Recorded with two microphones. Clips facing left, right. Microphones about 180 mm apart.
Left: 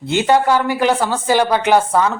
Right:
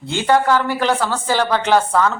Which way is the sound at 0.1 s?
15° left (ahead or behind).